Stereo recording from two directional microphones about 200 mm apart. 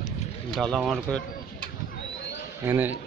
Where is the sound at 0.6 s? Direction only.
Centre (ahead or behind).